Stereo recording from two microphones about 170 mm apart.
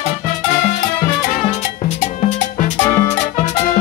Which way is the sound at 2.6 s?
40° left (ahead or behind).